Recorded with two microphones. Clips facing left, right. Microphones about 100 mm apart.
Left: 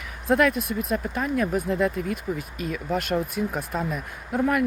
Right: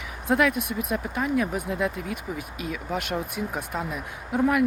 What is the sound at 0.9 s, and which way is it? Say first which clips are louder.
Speech: right 1 dB; 10° right (ahead or behind).